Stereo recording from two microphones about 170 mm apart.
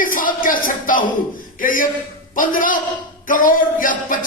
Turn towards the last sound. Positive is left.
turn(degrees=55)  # may be behind; listen again after turning